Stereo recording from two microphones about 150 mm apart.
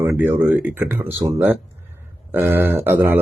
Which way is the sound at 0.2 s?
15° right (ahead or behind).